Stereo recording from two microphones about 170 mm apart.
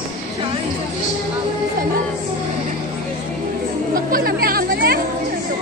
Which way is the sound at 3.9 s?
60° right (ahead or behind).